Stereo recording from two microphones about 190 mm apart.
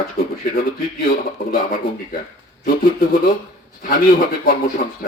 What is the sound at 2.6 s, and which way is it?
Speech, 50° left (ahead or behind).